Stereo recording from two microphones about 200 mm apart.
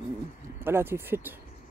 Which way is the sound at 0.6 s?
10° right (ahead or behind).